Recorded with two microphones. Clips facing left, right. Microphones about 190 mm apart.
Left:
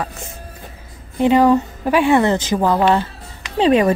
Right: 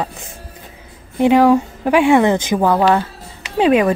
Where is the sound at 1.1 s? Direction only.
10° right (ahead or behind).